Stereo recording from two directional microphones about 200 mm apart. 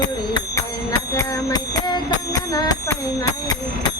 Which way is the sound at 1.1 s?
15° left (ahead or behind).